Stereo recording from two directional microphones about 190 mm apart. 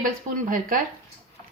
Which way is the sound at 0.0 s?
45° right (ahead or behind).